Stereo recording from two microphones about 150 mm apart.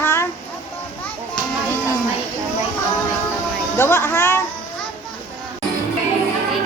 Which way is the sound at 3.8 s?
15° left (ahead or behind).